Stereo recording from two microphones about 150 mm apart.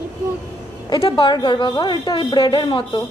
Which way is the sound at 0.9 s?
30° left (ahead or behind).